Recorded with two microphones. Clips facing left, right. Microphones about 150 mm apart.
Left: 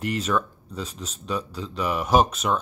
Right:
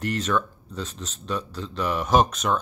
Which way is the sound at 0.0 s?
5° left (ahead or behind).